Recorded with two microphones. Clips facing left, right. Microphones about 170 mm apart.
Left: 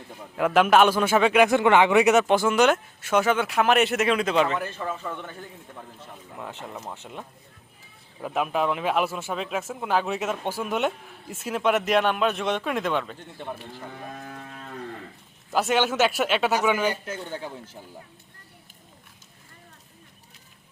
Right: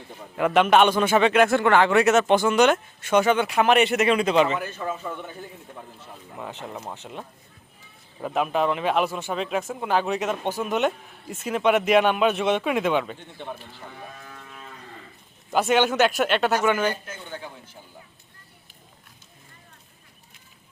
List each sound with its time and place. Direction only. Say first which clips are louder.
0.3 s a man's voice: even; centre (ahead or behind)
4.8 s a man's voice: right 1 dB; 10° right (ahead or behind)
6.3 s speech: right 2 dB; centre (ahead or behind)
13.7 s cattle: left 3 dB; 50° left (ahead or behind)
15.5 s speech: right 2 dB; centre (ahead or behind)
17.2 s speech: right 1 dB; 35° left (ahead or behind)